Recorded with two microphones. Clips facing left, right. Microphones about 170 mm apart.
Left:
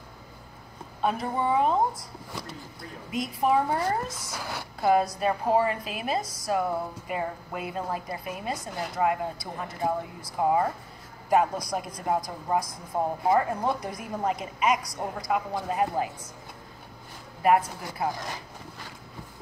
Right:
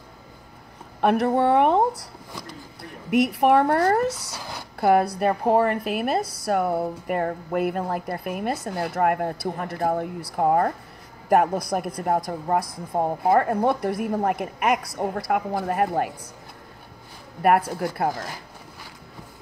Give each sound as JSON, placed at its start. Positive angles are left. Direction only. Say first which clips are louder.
{"t": 1.0, "sound": "a woman's voice", "louder": "right 8 dB", "side_deg": -70}
{"t": 2.8, "sound": "a woman's voice", "louder": "right 11 dB", "side_deg": -70}
{"t": 4.4, "sound": "a sound", "louder": "left 1 dB", "side_deg": -15}
{"t": 4.7, "sound": "a woman's voice", "louder": "right 4 dB", "side_deg": -60}
{"t": 17.4, "sound": "a woman's voice", "louder": "right 3 dB", "side_deg": -60}